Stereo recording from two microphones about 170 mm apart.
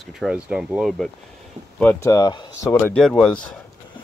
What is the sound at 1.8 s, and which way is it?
Speech, 15° left (ahead or behind).